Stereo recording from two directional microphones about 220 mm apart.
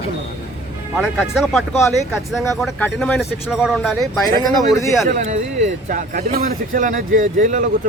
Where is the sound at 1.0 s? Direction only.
Centre (ahead or behind).